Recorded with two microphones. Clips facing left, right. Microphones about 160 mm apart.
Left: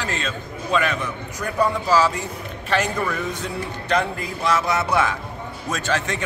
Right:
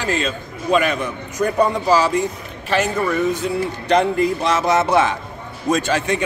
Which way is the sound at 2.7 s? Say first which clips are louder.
Right 4 dB; 5° right (ahead or behind).